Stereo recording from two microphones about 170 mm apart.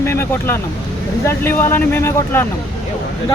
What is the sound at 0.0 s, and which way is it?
Speech, 15° left (ahead or behind).